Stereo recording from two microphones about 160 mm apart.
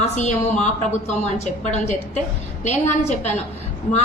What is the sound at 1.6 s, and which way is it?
A woman's voice, 45° left (ahead or behind).